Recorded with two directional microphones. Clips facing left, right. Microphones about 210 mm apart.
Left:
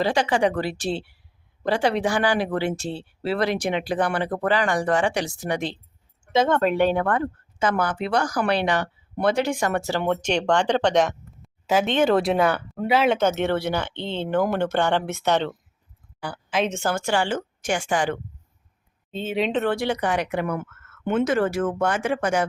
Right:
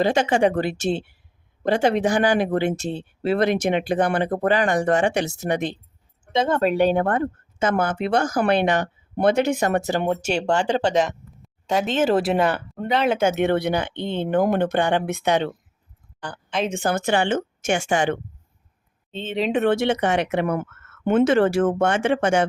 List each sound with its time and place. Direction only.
0.0 s speech: 25° right (ahead or behind)
3.7 s speech: 50° right (ahead or behind)
3.9 s speech: 20° right (ahead or behind)
6.3 s speech: centre (ahead or behind)
6.6 s speech: 15° right (ahead or behind)
8.1 s speech: 25° right (ahead or behind)
8.6 s a sound: 20° right (ahead or behind)
9.3 s speech: 20° right (ahead or behind); by 13.1 s 5° left (ahead or behind)
13.1 s speech: 10° right (ahead or behind)
16.2 s a woman's voice: 5° left (ahead or behind)
16.6 s speech: 15° right (ahead or behind)
19.1 s speech: 10° left (ahead or behind)
19.5 s speech: 15° right (ahead or behind)
19.7 s speech: 25° right (ahead or behind)